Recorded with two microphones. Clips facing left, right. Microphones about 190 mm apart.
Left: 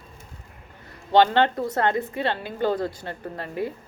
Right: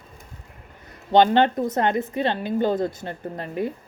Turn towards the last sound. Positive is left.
turn(degrees=-20)  # may be behind; listen again after turning